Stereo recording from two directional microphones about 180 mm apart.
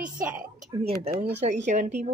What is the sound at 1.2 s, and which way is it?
Speech, 40° right (ahead or behind).